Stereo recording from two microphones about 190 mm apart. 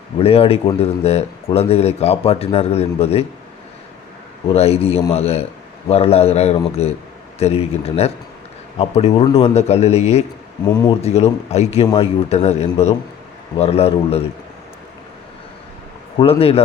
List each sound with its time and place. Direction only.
0.2 s speech: 30° left (ahead or behind)
4.5 s speech: 30° left (ahead or behind)
10.7 s speech: 20° left (ahead or behind)
11.0 s speech: 35° left (ahead or behind)
16.1 s speech: 30° left (ahead or behind)